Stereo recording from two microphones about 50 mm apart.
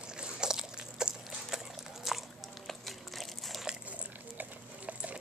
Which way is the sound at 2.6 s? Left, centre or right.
Centre.